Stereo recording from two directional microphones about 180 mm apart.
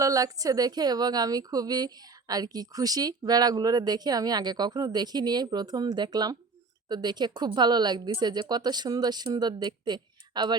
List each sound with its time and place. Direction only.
0.0 s a woman's voice: 20° right (ahead or behind)